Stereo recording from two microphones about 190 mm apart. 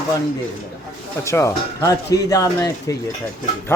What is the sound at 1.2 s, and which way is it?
Speech, 15° left (ahead or behind).